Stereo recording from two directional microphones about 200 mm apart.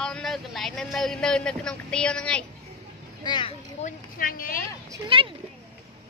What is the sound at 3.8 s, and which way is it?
Speech, 45° left (ahead or behind).